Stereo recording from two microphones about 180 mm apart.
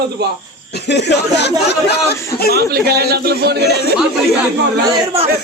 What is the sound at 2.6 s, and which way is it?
A man's voice, 60° right (ahead or behind).